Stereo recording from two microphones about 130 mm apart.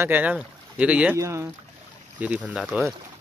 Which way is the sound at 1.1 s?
20° right (ahead or behind).